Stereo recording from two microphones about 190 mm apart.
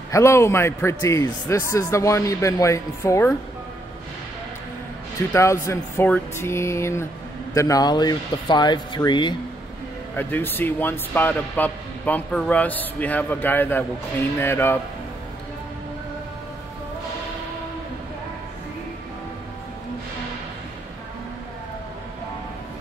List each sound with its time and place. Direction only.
0.1 s speech: 15° left (ahead or behind)
5.3 s speech: 15° left (ahead or behind)
10.1 s speech: 10° left (ahead or behind)